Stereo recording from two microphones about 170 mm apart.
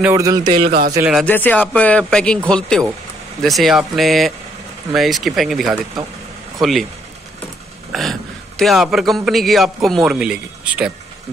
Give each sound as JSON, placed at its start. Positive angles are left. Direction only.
{"t": 0.0, "sound": "speech", "side_deg": -20}
{"t": 0.7, "sound": "a man's voice", "side_deg": -65}
{"t": 1.2, "sound": "speech", "side_deg": 10}
{"t": 7.9, "sound": "a man's voice", "side_deg": 0}